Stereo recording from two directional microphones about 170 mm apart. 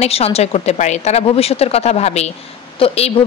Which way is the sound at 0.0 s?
35° left (ahead or behind).